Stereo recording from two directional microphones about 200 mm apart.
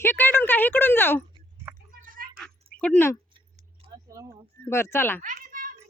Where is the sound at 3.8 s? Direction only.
20° right (ahead or behind).